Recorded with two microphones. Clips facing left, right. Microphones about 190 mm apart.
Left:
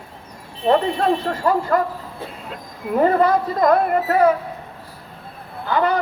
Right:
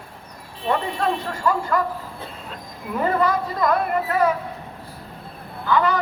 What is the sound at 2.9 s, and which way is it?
Speech, 40° left (ahead or behind).